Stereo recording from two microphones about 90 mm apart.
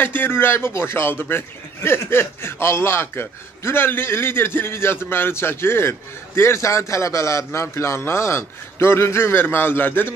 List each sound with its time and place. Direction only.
0.0 s a man's voice: 20° left (ahead or behind)